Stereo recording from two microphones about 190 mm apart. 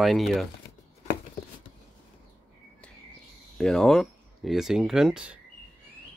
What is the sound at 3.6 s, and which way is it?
Speech, 5° left (ahead or behind).